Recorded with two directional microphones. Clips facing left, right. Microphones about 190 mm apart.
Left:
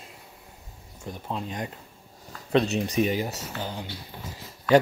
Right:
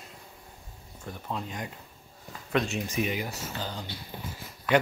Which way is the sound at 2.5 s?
35° left (ahead or behind).